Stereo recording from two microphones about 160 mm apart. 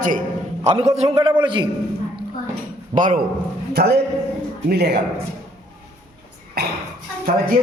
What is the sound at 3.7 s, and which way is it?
A man's voice, 90° right.